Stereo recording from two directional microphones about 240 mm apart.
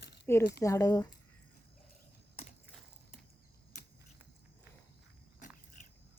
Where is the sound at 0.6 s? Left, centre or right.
Centre.